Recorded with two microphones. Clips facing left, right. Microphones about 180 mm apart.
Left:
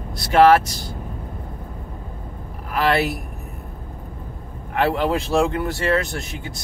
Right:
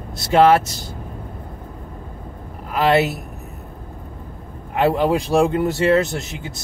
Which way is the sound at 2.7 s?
20° right (ahead or behind).